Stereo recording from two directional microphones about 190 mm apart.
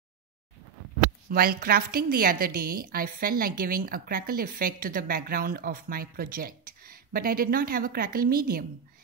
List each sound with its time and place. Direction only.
1.3 s a woman's voice: 50° right (ahead or behind)